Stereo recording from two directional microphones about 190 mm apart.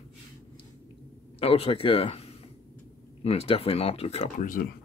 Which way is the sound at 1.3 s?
30° left (ahead or behind).